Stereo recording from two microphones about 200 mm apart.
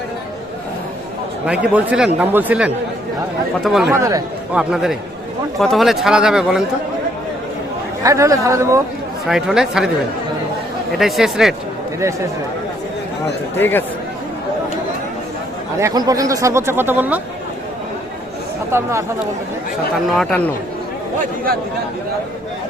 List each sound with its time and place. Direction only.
1.5 s speech: 5° right (ahead or behind)
3.9 s speech: 15° right (ahead or behind)
4.5 s speech: centre (ahead or behind)
8.0 s speech: 15° right (ahead or behind)
9.2 s speech: centre (ahead or behind)
10.9 s speech: centre (ahead or behind)
11.9 s speech: 15° right (ahead or behind)
13.6 s speech: 10° left (ahead or behind)
15.8 s speech: 20° right (ahead or behind)
18.7 s speech: 15° right (ahead or behind)